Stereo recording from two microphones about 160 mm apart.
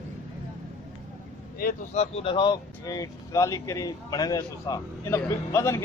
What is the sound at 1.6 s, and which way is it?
Speech, 65° left (ahead or behind).